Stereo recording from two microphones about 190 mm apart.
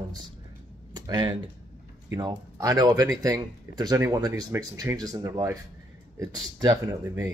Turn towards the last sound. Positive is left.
turn(degrees=-10)  # may be behind; listen again after turning